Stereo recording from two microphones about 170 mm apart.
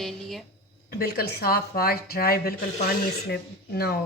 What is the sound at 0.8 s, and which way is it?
Speech, 65° left (ahead or behind).